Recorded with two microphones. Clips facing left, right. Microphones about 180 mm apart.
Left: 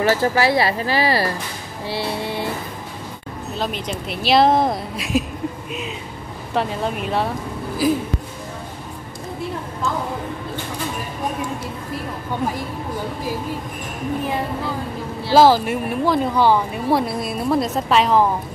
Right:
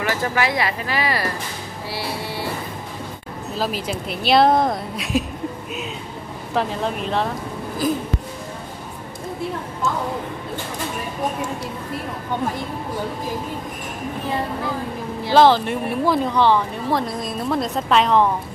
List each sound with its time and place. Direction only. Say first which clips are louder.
0.0 s speech: left 5 dB; 30° left (ahead or behind)
1.9 s music: left 4 dB; 25° left (ahead or behind)
3.5 s speech: right 1 dB; 5° right (ahead or behind)
6.5 s speech: even; centre (ahead or behind)
15.3 s a woman's voice: left 1 dB; 5° left (ahead or behind)